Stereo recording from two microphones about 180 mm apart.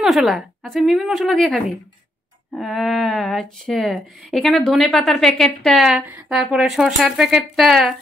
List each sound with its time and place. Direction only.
0.0 s speech: centre (ahead or behind)